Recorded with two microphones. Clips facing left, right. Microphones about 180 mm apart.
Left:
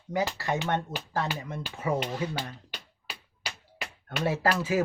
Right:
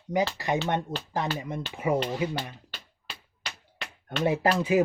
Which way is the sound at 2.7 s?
10° left (ahead or behind).